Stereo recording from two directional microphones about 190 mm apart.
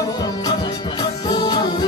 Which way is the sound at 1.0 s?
20° left (ahead or behind).